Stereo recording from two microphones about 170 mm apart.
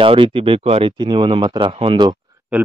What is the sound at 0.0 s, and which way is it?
Speech, 30° right (ahead or behind).